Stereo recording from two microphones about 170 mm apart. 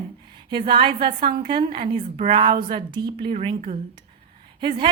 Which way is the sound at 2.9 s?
25° right (ahead or behind).